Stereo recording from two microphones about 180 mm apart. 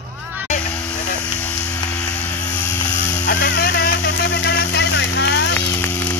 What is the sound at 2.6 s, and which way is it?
Vehicle, 10° left (ahead or behind).